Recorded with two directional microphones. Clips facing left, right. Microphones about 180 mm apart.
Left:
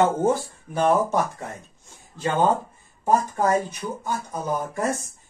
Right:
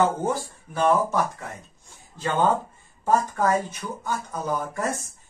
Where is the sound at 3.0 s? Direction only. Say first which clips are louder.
Left 1 dB; 15° left (ahead or behind).